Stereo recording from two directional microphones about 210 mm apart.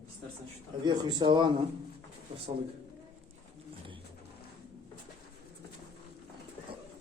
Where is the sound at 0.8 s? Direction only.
20° right (ahead or behind).